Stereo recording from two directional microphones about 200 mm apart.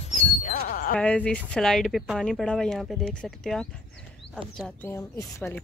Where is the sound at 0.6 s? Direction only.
45° left (ahead or behind).